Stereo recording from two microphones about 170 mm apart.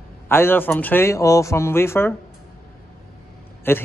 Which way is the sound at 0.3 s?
15° left (ahead or behind).